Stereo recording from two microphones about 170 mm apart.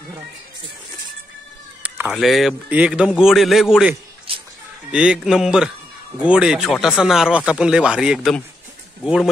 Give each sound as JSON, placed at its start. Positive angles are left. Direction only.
{"t": 1.8, "sound": "a man's voice", "side_deg": -10}
{"t": 4.3, "sound": "a sound", "side_deg": -35}
{"t": 4.9, "sound": "a man's voice", "side_deg": -5}